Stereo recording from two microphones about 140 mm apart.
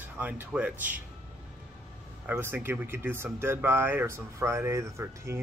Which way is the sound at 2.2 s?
15° right (ahead or behind).